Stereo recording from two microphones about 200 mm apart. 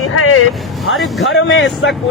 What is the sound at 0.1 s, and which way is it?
Speech, 90° left.